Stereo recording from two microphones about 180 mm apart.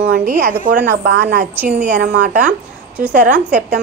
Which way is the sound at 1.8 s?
50° right (ahead or behind).